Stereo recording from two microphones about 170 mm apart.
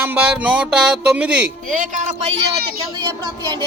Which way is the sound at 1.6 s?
50° right (ahead or behind).